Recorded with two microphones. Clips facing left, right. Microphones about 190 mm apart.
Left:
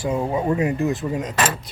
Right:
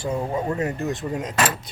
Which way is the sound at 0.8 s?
Centre (ahead or behind).